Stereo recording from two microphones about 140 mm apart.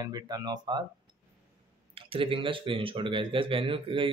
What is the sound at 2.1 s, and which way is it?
Speech, 40° right (ahead or behind).